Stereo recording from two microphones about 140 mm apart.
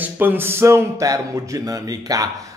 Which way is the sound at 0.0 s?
15° right (ahead or behind).